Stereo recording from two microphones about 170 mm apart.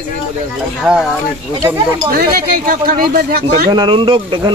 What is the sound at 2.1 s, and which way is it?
Speech, 60° right (ahead or behind).